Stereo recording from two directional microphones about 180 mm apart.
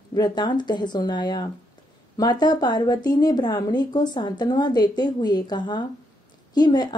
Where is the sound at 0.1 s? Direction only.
25° left (ahead or behind).